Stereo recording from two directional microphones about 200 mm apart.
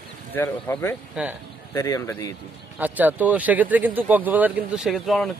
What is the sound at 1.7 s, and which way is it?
Speech, 15° left (ahead or behind).